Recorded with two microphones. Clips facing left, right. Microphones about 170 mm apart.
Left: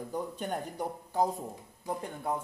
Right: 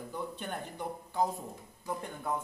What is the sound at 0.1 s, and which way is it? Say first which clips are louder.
Speech: left 4 dB; 40° left (ahead or behind).